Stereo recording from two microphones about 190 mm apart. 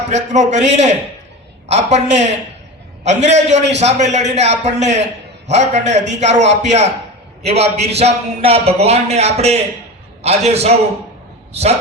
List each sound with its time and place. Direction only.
0.1 s a man's voice: 40° right (ahead or behind)